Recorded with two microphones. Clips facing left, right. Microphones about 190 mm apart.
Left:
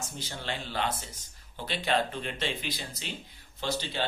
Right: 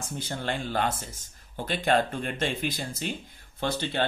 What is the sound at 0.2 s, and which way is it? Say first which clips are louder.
Speech: right 6 dB; 50° right (ahead or behind).